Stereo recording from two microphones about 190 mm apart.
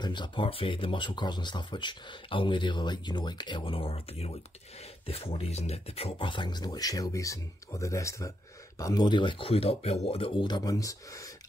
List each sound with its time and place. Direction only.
0.0 s speech: 25° left (ahead or behind)